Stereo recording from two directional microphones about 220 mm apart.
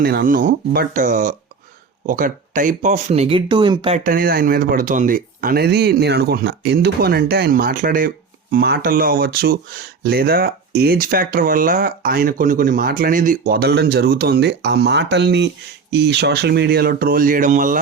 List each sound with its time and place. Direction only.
0.0 s speech: 45° right (ahead or behind); by 3.9 s 20° right (ahead or behind)
3.9 s speech: 40° right (ahead or behind)